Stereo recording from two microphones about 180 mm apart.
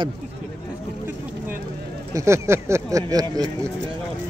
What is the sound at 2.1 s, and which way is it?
Speech, 15° right (ahead or behind).